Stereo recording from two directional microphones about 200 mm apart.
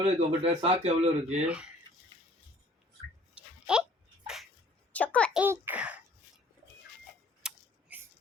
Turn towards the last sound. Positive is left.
turn(degrees=-5)  # may be behind; listen again after turning